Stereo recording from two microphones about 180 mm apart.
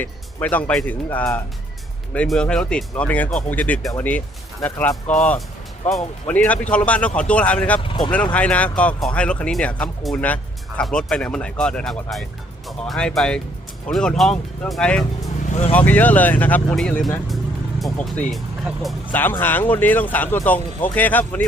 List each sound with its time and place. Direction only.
0.0 s speech: 10° left (ahead or behind)
7.8 s speech: 25° left (ahead or behind)
8.1 s speech: 5° left (ahead or behind)
19.1 s speech: 10° left (ahead or behind)